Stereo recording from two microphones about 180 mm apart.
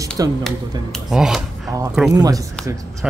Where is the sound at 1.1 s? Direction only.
5° right (ahead or behind).